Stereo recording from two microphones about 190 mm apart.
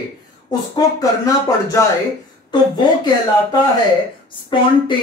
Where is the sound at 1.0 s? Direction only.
15° left (ahead or behind).